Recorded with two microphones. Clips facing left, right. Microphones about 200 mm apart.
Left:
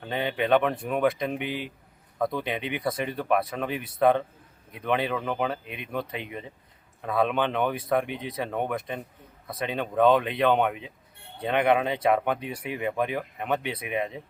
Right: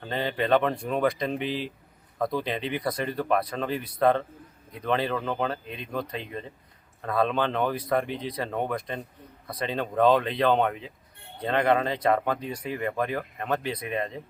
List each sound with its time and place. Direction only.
0.0 s speech: 5° left (ahead or behind)
1.5 s speech: 55° left (ahead or behind)
2.1 s speech: centre (ahead or behind)